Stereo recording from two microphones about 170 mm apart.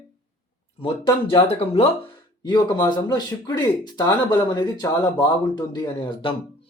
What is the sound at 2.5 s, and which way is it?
Speech, 25° left (ahead or behind).